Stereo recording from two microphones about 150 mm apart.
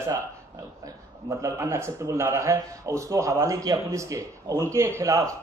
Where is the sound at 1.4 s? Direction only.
20° right (ahead or behind).